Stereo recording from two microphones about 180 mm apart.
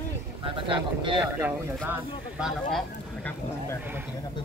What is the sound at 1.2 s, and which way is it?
Speech, 10° right (ahead or behind).